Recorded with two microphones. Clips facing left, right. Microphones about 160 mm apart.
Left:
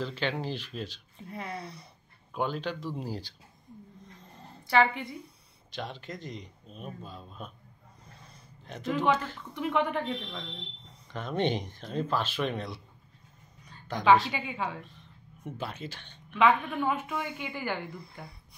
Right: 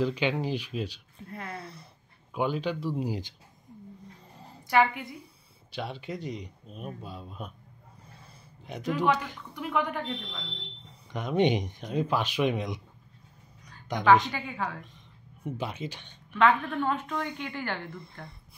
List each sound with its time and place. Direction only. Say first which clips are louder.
0.0 s a woman's voice: right 5 dB; 10° right (ahead or behind)
4.2 s a sound: even; 10° right (ahead or behind)
5.8 s speech: right 3 dB; 10° right (ahead or behind)
11.1 s speech: right 4 dB; 15° right (ahead or behind)
13.9 s a woman's voice: right 2 dB; 15° right (ahead or behind)
14.3 s a woman's voice: even; 10° left (ahead or behind)
15.4 s speech: right 3 dB; 15° right (ahead or behind)
16.3 s a woman's voice: right 1 dB; 5° left (ahead or behind)